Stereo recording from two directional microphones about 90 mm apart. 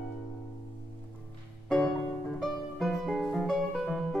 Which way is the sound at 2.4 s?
Centre (ahead or behind).